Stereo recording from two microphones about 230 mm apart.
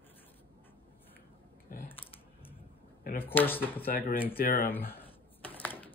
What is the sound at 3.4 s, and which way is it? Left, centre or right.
Speech, centre.